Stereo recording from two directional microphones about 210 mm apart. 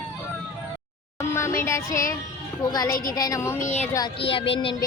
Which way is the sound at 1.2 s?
15° left (ahead or behind).